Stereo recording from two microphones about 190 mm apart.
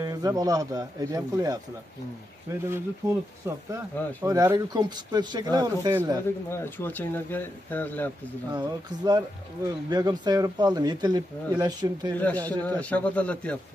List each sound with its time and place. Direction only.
0.0 s speech: 20° right (ahead or behind)
2.6 s speech: 15° right (ahead or behind)
6.2 s speech: 10° left (ahead or behind)
8.5 s speech: 20° right (ahead or behind)
12.2 s speech: 10° left (ahead or behind)